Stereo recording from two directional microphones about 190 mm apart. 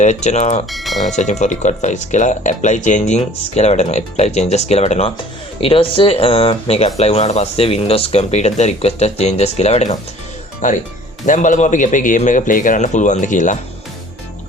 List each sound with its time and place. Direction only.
0.0 s speech: 40° left (ahead or behind)
0.7 s speech: centre (ahead or behind)
1.0 s speech: 40° left (ahead or behind)